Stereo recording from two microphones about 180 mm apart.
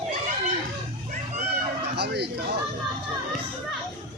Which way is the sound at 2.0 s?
65° right (ahead or behind).